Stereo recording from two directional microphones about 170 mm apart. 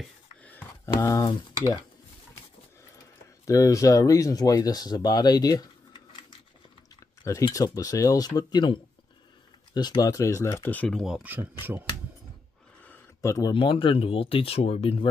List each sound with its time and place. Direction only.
0.4 s a sound: 10° left (ahead or behind)
0.9 s speech: 25° left (ahead or behind)
3.4 s speech: 20° left (ahead or behind); by 11.4 s 5° right (ahead or behind)
12.8 s speech: 15° left (ahead or behind); by 15.0 s 35° left (ahead or behind)